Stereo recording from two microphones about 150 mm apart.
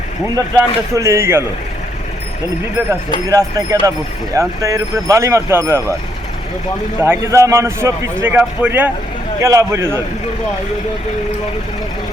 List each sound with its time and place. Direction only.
0.3 s speech: 20° right (ahead or behind)
3.2 s speech: 25° right (ahead or behind)
7.0 s a man's voice: 20° right (ahead or behind)
9.4 s speech: 20° right (ahead or behind)